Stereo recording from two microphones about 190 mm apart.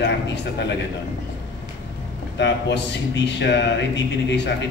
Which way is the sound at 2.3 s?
65° left (ahead or behind).